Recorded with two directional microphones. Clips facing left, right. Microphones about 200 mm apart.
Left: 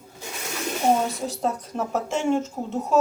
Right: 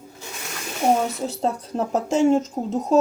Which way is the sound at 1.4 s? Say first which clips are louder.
Right 3 dB; 30° right (ahead or behind).